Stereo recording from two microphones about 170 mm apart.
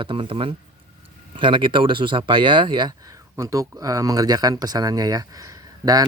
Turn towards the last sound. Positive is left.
turn(degrees=-20)  # may be behind; listen again after turning